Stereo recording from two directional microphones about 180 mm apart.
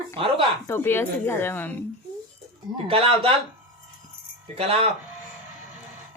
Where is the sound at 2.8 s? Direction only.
30° right (ahead or behind).